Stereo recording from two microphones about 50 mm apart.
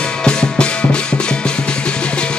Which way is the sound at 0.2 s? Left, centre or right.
Centre.